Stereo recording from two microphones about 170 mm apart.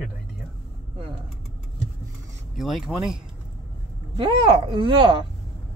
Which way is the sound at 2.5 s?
Centre (ahead or behind).